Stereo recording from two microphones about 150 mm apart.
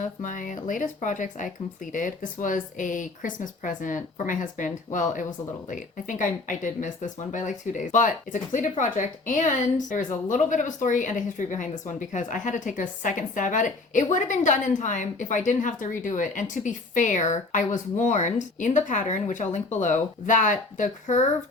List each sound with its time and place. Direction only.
0.0 s speech: 55° left (ahead or behind)